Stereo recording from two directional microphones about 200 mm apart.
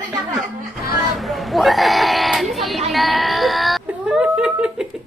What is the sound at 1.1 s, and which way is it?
Speech, centre (ahead or behind).